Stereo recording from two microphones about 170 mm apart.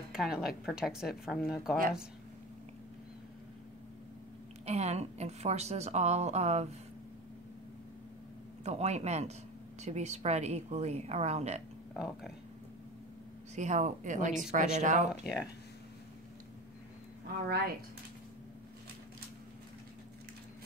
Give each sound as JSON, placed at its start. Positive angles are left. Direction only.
{"t": 0.1, "sound": "a woman's voice", "side_deg": -5}
{"t": 4.6, "sound": "a woman's voice", "side_deg": -40}
{"t": 8.6, "sound": "a woman's voice", "side_deg": -40}
{"t": 11.9, "sound": "speech", "side_deg": 0}
{"t": 13.6, "sound": "a woman's voice", "side_deg": -45}